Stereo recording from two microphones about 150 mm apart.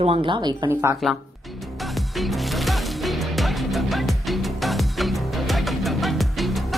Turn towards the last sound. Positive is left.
turn(degrees=0)  # may be behind; listen again after turning